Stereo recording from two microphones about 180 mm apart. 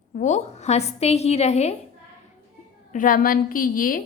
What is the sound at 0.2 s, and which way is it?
A woman's voice, 40° left (ahead or behind).